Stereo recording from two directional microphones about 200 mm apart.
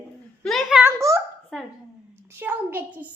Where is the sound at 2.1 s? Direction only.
10° right (ahead or behind).